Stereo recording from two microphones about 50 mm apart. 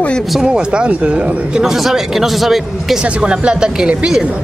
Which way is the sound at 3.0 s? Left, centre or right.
Centre.